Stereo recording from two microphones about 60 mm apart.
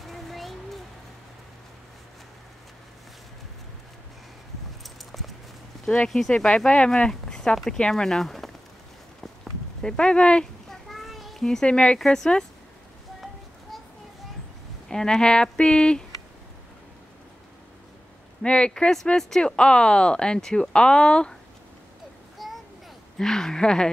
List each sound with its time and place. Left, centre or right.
0.0 s a sound: centre
4.8 s clip-clop: centre
5.9 s speech: centre
9.2 s a sound: centre
10.7 s children playing: centre
11.6 s speech: centre
12.0 s speech: centre
14.9 s speech: centre
18.4 s speech: centre
22.4 s a sound: centre
23.1 s speech: centre